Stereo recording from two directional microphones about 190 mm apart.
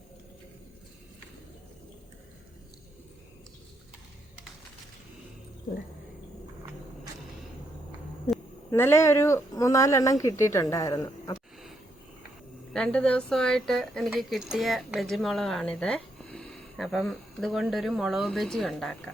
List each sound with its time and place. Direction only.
8.7 s speech: 10° left (ahead or behind)
12.7 s speech: 5° left (ahead or behind)